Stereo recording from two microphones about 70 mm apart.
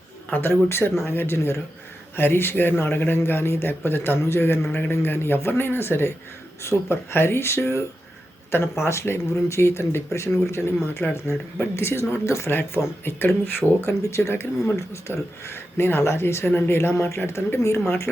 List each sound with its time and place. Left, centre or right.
0.3 s speech: left